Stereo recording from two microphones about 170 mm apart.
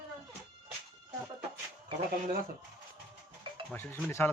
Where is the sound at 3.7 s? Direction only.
10° left (ahead or behind).